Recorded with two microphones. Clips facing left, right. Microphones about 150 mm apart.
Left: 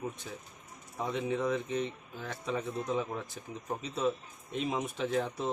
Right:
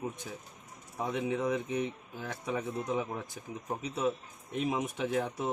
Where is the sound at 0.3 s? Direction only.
5° right (ahead or behind).